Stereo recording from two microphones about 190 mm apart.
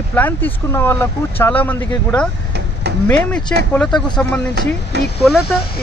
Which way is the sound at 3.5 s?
10° left (ahead or behind).